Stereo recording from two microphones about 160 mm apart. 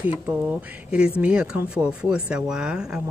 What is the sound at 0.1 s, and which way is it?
Speech, 10° right (ahead or behind).